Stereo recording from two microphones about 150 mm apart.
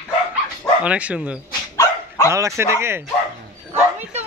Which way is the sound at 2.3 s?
20° right (ahead or behind).